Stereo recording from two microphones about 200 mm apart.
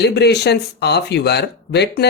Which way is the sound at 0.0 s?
55° left (ahead or behind).